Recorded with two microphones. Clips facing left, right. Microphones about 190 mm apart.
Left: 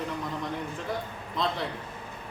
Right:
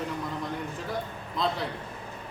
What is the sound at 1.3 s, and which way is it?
Speech, centre (ahead or behind).